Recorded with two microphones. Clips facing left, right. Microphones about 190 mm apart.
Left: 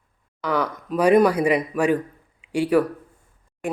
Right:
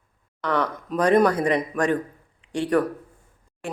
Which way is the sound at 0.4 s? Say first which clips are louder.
Left 1 dB; 5° left (ahead or behind).